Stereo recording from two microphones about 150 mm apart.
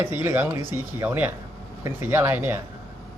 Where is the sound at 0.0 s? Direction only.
15° right (ahead or behind).